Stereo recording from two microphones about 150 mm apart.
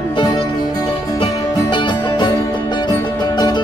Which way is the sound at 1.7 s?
35° left (ahead or behind).